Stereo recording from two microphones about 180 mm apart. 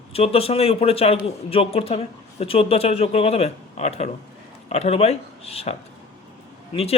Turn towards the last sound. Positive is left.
turn(degrees=35)  # may be behind; listen again after turning